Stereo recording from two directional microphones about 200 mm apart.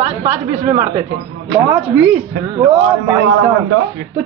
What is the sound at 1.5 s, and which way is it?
A man's voice, 10° right (ahead or behind).